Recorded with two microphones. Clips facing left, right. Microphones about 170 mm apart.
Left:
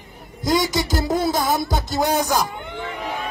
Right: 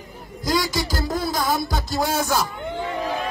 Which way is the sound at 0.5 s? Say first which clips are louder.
Left 3 dB; centre (ahead or behind).